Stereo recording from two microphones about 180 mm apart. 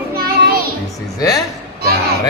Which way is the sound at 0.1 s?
55° right (ahead or behind).